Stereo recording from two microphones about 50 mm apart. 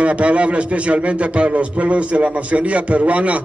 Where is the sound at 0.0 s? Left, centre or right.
Right.